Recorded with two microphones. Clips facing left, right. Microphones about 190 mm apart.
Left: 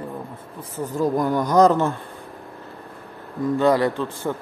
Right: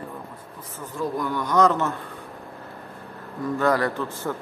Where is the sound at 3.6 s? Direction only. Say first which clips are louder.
Left 3 dB; 20° left (ahead or behind).